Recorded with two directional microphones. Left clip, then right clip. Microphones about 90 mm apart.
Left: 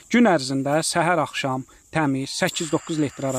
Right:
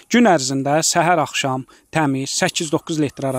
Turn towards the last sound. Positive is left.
turn(degrees=-25)  # may be behind; listen again after turning